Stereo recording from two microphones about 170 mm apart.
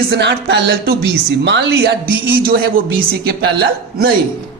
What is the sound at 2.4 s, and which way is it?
Speech, 60° right (ahead or behind).